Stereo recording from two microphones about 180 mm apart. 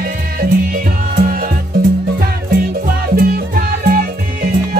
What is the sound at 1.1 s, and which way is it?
Music, 55° right (ahead or behind).